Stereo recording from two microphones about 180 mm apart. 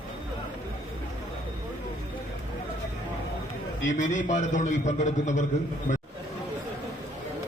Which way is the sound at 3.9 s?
45° left (ahead or behind).